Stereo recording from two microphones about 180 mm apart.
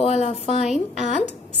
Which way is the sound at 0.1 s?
35° left (ahead or behind).